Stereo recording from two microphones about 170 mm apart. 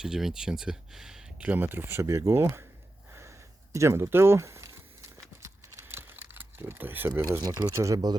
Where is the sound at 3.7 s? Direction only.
15° right (ahead or behind).